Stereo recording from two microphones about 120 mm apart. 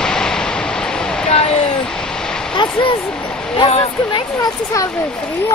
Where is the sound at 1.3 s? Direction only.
55° left (ahead or behind).